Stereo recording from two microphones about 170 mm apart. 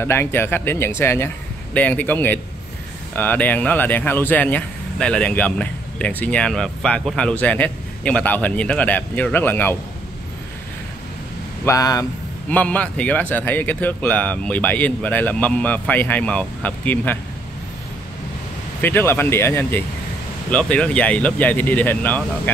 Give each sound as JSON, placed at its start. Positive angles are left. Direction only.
{"t": 0.0, "sound": "speech", "side_deg": 15}
{"t": 11.6, "sound": "speech", "side_deg": 20}
{"t": 12.4, "sound": "speech", "side_deg": 10}
{"t": 18.8, "sound": "speech", "side_deg": 10}